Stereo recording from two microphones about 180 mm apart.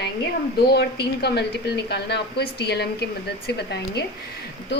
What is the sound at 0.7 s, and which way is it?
A woman's voice, 65° left (ahead or behind).